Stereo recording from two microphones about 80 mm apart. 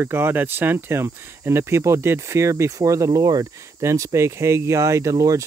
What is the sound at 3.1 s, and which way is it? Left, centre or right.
Speech, right.